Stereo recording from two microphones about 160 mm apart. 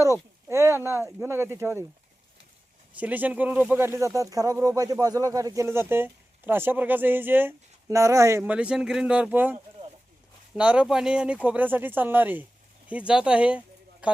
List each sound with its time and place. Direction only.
0.4 s speech: 15° right (ahead or behind)
2.9 s speech: 10° right (ahead or behind)